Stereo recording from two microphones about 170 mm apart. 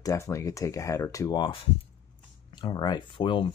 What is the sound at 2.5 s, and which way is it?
Speech, 25° left (ahead or behind).